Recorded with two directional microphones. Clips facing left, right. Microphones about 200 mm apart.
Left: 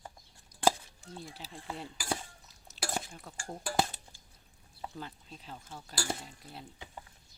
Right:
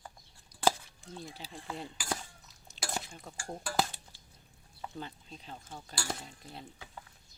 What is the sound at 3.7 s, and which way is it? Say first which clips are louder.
Dishes: left 1 dB; 20° left (ahead or behind).